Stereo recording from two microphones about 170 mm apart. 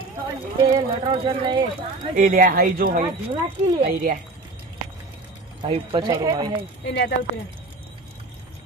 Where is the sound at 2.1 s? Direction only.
55° right (ahead or behind).